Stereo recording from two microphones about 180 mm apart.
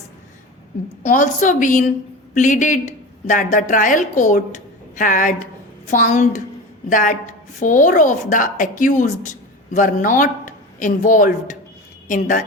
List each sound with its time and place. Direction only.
1.0 s a woman's voice: 45° left (ahead or behind)